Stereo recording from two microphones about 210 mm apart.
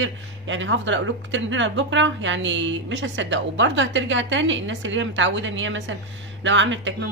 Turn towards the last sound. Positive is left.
turn(degrees=-60)  # may be behind; listen again after turning